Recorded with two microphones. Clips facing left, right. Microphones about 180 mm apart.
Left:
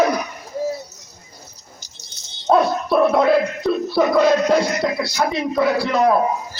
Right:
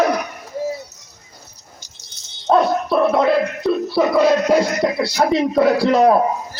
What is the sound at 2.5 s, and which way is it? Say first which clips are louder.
Dog: right 1 dB; centre (ahead or behind).